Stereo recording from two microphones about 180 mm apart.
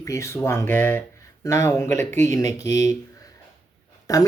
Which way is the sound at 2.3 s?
20° left (ahead or behind).